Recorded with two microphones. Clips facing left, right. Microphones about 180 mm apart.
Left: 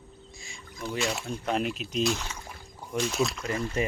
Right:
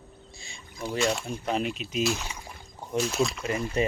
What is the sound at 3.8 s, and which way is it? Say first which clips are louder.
Speech: right 3 dB; 25° right (ahead or behind).